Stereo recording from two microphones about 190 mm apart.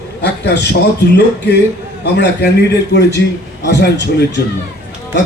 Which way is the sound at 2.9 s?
65° left (ahead or behind).